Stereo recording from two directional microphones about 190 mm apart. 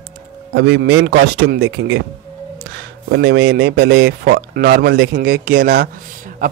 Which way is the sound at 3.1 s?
65° right (ahead or behind).